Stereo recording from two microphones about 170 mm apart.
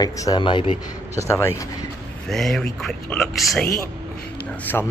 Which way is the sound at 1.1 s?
15° left (ahead or behind).